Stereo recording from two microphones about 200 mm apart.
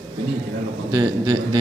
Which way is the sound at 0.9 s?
20° right (ahead or behind).